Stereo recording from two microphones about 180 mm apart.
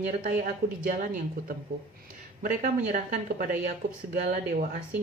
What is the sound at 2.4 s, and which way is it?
Speech, 45° right (ahead or behind).